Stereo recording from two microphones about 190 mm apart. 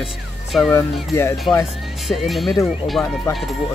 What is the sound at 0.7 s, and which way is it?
Speech, 15° left (ahead or behind).